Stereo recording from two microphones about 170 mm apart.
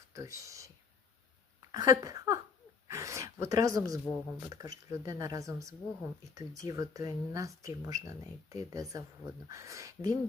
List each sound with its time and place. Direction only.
0.1 s speech: 20° right (ahead or behind)
1.7 s speech: 20° right (ahead or behind)